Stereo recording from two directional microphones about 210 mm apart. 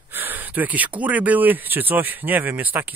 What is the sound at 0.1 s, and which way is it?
Speech, 10° right (ahead or behind).